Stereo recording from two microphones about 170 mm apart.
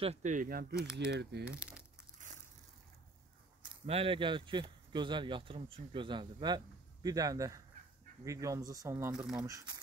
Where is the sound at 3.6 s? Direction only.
30° right (ahead or behind); by 9.5 s 5° right (ahead or behind).